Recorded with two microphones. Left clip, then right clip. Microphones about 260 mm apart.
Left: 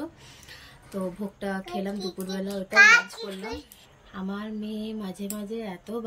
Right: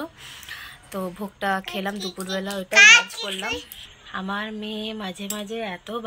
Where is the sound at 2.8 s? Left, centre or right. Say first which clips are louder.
Right 4 dB; centre.